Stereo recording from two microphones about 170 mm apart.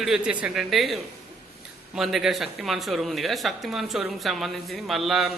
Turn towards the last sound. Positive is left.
turn(degrees=0)  # may be behind; listen again after turning